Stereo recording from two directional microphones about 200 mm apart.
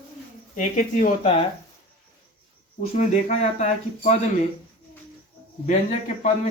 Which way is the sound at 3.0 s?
35° left (ahead or behind).